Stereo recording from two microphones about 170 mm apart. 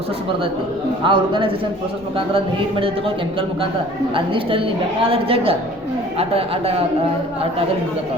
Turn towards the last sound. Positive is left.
turn(degrees=-35)  # may be behind; listen again after turning